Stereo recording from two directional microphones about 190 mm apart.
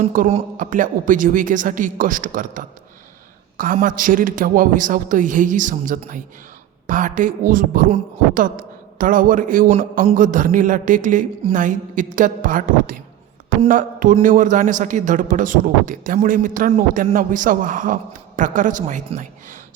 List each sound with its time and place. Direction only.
0.0 s speech: 45° right (ahead or behind)